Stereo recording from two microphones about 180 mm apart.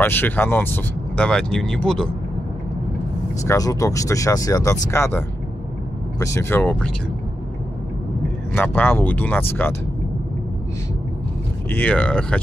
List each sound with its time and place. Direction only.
0.0 s speech: 10° left (ahead or behind)
3.4 s speech: 20° left (ahead or behind)
8.5 s speech: 10° left (ahead or behind)
11.7 s speech: 5° left (ahead or behind)